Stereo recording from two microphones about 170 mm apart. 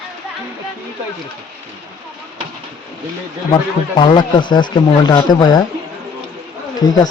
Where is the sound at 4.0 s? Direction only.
30° left (ahead or behind).